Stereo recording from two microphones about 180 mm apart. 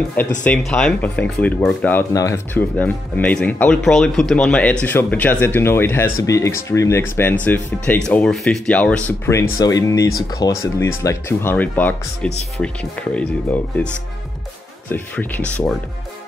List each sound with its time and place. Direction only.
0.4 s speech: 5° left (ahead or behind)
14.9 s speech: 10° left (ahead or behind)